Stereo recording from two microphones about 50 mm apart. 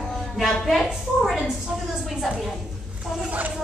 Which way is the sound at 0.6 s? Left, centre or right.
Centre.